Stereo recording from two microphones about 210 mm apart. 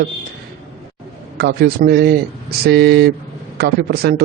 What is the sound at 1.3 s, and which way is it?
A man's voice, 50° right (ahead or behind).